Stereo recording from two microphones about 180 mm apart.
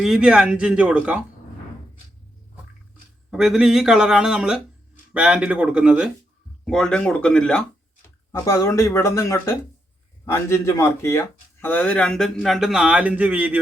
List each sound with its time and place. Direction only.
0.0 s speech: 5° right (ahead or behind)
3.2 s speech: centre (ahead or behind)
8.3 s speech: 15° left (ahead or behind); by 13.6 s 10° right (ahead or behind)